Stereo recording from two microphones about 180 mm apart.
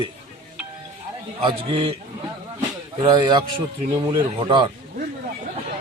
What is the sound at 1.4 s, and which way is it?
Speech, 30° right (ahead or behind).